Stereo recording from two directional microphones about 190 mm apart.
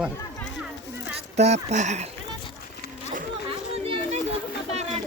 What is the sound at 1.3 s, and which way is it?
Speech, 35° right (ahead or behind).